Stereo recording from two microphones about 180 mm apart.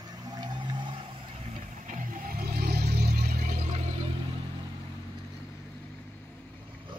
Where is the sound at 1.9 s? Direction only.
50° right (ahead or behind).